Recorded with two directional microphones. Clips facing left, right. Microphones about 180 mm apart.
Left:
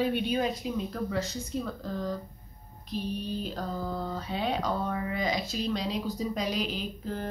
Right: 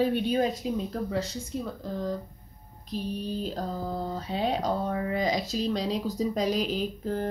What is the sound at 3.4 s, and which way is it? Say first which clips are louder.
Mantra: right 2 dB; 35° right (ahead or behind).